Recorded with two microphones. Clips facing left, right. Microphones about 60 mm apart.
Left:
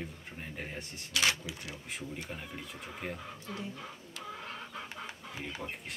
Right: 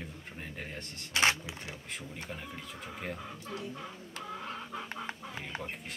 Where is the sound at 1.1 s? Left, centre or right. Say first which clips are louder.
Right 3 dB; right.